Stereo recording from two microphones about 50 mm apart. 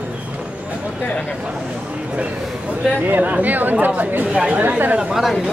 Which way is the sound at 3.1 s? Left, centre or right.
Right.